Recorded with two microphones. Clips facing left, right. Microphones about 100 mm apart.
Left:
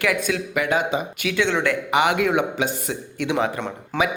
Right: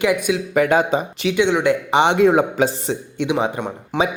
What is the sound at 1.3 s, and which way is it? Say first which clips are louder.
Speech: right 5 dB; 15° right (ahead or behind).